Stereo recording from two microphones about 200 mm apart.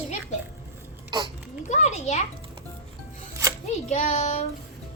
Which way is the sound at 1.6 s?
35° left (ahead or behind).